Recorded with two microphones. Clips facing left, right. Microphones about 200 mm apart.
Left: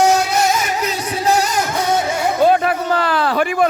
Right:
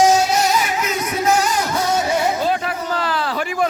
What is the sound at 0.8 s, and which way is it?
Music, 35° left (ahead or behind).